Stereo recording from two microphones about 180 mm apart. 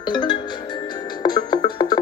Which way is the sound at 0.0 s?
25° left (ahead or behind).